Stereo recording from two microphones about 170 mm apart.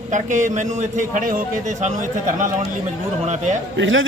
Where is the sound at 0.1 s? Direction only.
45° right (ahead or behind).